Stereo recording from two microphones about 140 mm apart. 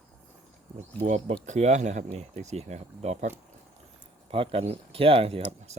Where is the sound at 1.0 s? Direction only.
55° right (ahead or behind).